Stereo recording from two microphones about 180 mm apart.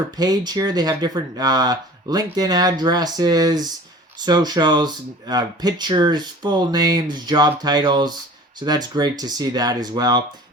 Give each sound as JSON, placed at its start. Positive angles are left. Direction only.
{"t": 0.2, "sound": "speech", "side_deg": -20}